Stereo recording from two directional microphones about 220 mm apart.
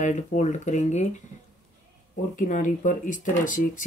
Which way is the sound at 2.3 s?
35° left (ahead or behind).